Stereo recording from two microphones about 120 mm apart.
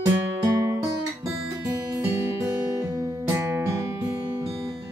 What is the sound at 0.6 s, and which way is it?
Music, 25° right (ahead or behind).